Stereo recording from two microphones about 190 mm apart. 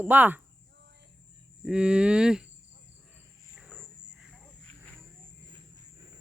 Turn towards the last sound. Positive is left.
turn(degrees=-5)  # may be behind; listen again after turning